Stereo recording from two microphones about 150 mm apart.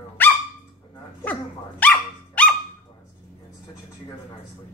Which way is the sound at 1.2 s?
10° left (ahead or behind).